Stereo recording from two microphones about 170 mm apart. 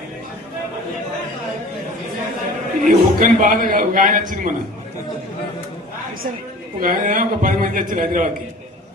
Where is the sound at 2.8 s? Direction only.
50° right (ahead or behind).